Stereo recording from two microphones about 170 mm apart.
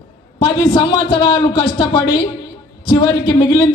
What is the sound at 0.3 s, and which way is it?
A man's voice, 20° left (ahead or behind).